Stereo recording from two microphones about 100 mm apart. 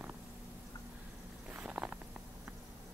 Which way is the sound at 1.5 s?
10° right (ahead or behind).